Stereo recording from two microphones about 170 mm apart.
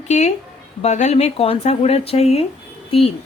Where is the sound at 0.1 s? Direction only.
45° left (ahead or behind).